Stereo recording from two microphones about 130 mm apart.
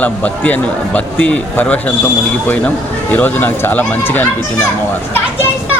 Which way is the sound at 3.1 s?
15° left (ahead or behind).